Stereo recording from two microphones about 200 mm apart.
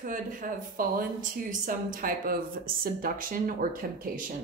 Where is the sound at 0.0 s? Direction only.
40° right (ahead or behind).